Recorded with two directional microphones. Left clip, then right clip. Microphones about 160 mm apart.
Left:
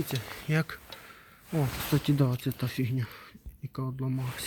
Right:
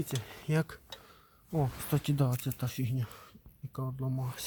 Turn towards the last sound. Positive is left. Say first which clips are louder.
# left 3 dB
turn(degrees=-5)  # may be behind; listen again after turning